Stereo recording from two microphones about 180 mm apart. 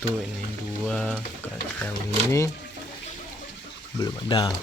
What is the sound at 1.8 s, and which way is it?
Speech, 15° left (ahead or behind).